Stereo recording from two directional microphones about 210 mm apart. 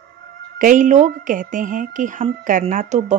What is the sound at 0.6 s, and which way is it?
A woman's voice, 40° right (ahead or behind).